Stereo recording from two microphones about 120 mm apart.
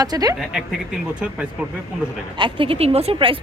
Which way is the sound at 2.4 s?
45° right (ahead or behind).